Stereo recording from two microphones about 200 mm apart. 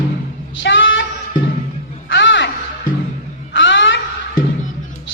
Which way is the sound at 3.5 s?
70° left (ahead or behind).